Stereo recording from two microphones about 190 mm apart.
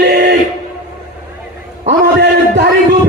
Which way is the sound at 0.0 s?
60° right (ahead or behind).